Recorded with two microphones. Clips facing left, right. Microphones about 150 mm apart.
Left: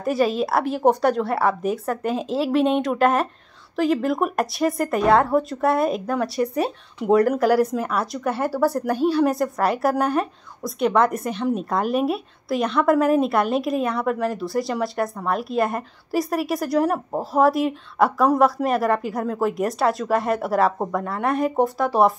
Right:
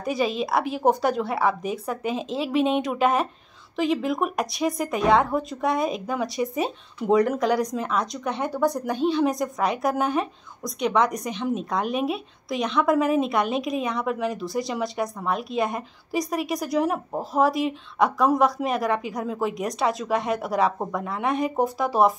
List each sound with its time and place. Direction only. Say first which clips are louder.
0.0 s speech: left 4 dB; centre (ahead or behind)